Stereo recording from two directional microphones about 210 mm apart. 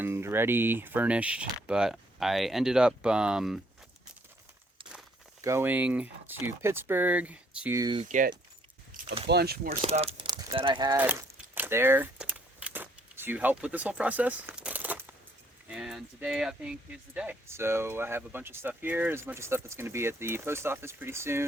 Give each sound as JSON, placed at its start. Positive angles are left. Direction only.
{"t": 0.0, "sound": "speech", "side_deg": -10}
{"t": 5.4, "sound": "speech", "side_deg": -10}
{"t": 8.0, "sound": "speech", "side_deg": -40}
{"t": 8.9, "sound": "a sound", "side_deg": -40}
{"t": 9.3, "sound": "speech", "side_deg": -50}
{"t": 9.6, "sound": "speech", "side_deg": -30}
{"t": 10.9, "sound": "a sound", "side_deg": -10}
{"t": 15.7, "sound": "speech", "side_deg": -5}